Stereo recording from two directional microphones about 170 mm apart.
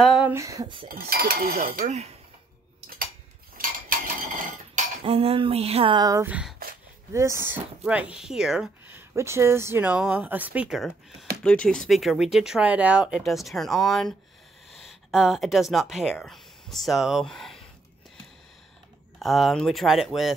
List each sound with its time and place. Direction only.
0.0 s a sound: centre (ahead or behind)
0.3 s speech: 20° right (ahead or behind)
0.8 s cutlery: 60° right (ahead or behind)
3.5 s cutlery: 55° right (ahead or behind)
5.0 s speech: 35° right (ahead or behind)
6.2 s speech: 10° right (ahead or behind)
19.1 s speech: centre (ahead or behind)